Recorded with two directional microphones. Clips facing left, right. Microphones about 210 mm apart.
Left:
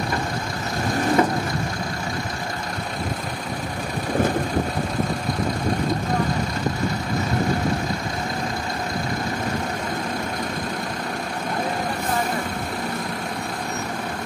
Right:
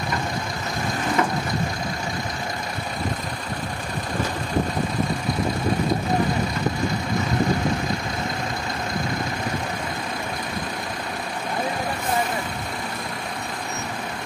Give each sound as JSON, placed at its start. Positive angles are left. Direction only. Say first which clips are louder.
{"t": 1.2, "sound": "vehicle", "louder": "left 3 dB", "side_deg": 35}